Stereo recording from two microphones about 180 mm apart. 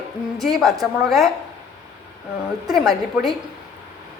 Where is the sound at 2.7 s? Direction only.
Centre (ahead or behind).